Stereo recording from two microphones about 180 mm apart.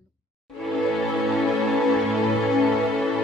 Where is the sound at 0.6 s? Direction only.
Centre (ahead or behind).